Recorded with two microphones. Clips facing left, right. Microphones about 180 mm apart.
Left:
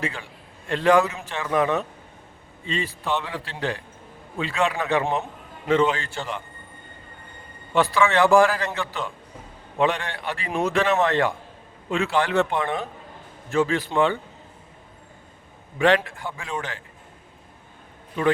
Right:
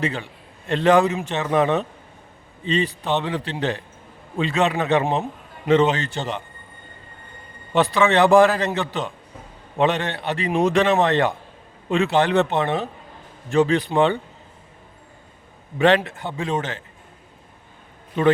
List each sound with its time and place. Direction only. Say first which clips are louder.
0.0 s a man's voice: right 5 dB; 25° right (ahead or behind)
7.7 s a man's voice: right 2 dB; 20° right (ahead or behind)
16.0 s a man's voice: right 5 dB; 20° right (ahead or behind)